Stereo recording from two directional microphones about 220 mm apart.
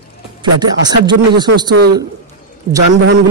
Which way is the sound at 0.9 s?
20° right (ahead or behind).